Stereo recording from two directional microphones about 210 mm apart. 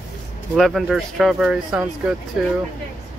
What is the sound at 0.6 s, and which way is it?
Speech, centre (ahead or behind).